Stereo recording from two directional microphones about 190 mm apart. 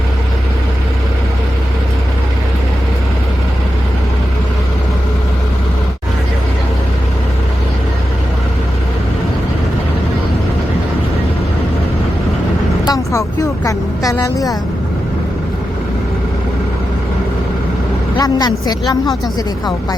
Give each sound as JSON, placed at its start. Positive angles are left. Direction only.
{"t": 12.8, "sound": "vehicle", "side_deg": 15}
{"t": 18.2, "sound": "speech", "side_deg": 20}